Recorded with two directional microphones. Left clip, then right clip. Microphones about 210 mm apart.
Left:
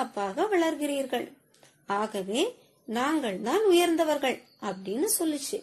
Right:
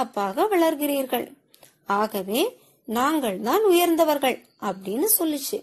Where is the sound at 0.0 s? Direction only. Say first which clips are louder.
Right 5 dB; 35° right (ahead or behind).